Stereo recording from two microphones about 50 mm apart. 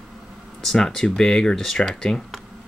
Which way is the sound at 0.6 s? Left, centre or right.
Centre.